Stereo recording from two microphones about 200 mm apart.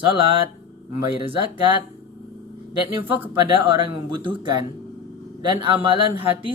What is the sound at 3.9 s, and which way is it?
Speech, 25° right (ahead or behind).